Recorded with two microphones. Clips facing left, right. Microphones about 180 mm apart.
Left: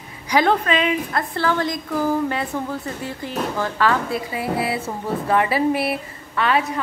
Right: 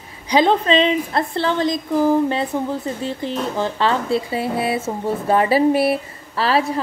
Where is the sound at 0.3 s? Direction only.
20° right (ahead or behind).